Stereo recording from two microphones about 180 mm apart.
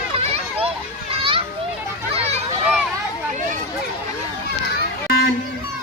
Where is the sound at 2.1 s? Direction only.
35° right (ahead or behind).